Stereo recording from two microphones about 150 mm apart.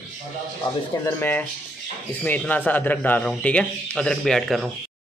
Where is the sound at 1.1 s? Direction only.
15° left (ahead or behind).